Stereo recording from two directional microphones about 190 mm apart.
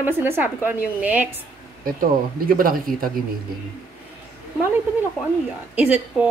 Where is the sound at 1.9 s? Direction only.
50° right (ahead or behind).